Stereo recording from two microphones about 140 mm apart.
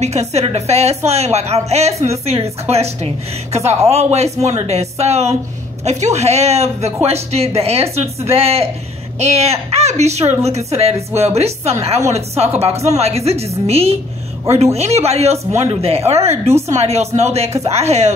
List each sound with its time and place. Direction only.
0.0 s a woman's voice: 55° right (ahead or behind)